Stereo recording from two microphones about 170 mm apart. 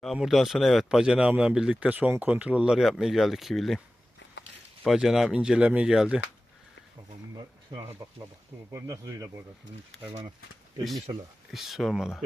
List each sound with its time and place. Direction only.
0.0 s speech: centre (ahead or behind)
4.8 s speech: centre (ahead or behind)
7.3 s speech: 25° right (ahead or behind)
11.5 s speech: centre (ahead or behind)